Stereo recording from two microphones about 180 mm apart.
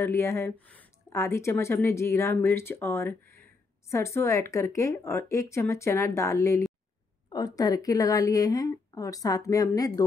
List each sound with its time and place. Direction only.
0.0 s a woman's voice: 15° left (ahead or behind)